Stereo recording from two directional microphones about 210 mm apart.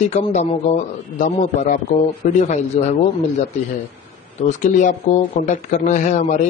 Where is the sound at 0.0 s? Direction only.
35° left (ahead or behind).